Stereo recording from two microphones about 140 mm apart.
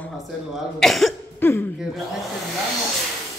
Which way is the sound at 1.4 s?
15° left (ahead or behind).